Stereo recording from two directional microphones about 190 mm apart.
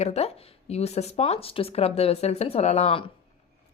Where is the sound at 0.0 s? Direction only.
35° left (ahead or behind).